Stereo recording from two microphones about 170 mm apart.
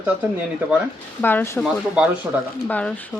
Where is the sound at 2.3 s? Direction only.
10° right (ahead or behind).